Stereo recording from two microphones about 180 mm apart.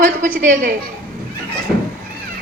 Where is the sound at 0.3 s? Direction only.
50° right (ahead or behind).